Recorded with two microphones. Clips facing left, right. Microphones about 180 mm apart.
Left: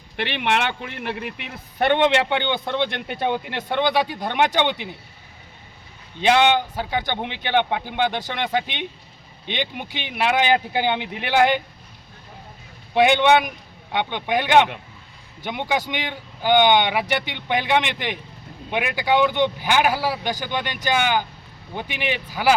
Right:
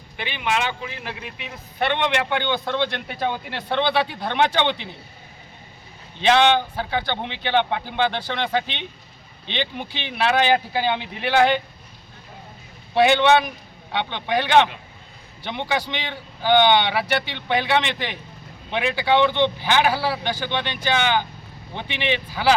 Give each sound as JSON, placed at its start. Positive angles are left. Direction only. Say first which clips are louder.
{"t": 0.2, "sound": "speech", "louder": "left 2 dB", "side_deg": 65}
{"t": 2.0, "sound": "a man's voice", "louder": "left 3 dB", "side_deg": 15}
{"t": 6.1, "sound": "a man's voice", "louder": "even", "side_deg": 10}
{"t": 12.9, "sound": "a man's voice", "louder": "even", "side_deg": 15}